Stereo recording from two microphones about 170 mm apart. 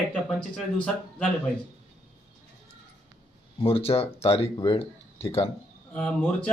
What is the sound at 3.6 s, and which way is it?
Speech, 35° left (ahead or behind).